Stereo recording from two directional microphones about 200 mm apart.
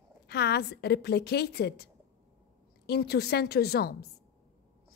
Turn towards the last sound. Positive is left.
turn(degrees=55)  # may be behind; listen again after turning